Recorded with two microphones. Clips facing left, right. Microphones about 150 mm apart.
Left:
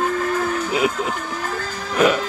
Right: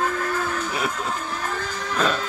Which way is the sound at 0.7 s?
15° left (ahead or behind).